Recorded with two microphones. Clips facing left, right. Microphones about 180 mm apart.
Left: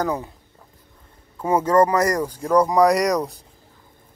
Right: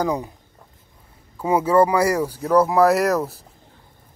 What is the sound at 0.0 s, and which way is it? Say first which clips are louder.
Speech: right 1 dB; 15° right (ahead or behind).